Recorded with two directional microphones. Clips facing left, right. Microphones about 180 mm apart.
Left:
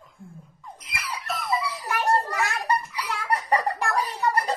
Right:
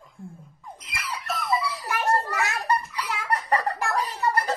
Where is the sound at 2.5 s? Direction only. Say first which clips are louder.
Even; 10° left (ahead or behind).